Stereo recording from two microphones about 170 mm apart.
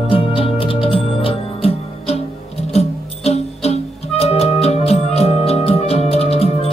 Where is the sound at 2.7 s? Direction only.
40° left (ahead or behind).